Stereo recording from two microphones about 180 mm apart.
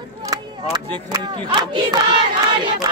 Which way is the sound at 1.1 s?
25° right (ahead or behind).